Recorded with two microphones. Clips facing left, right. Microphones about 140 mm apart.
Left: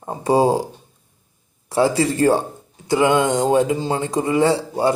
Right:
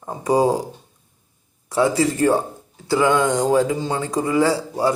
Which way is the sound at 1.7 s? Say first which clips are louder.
Left 1 dB; 30° left (ahead or behind).